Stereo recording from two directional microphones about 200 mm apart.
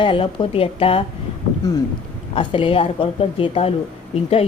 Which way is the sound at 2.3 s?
25° left (ahead or behind).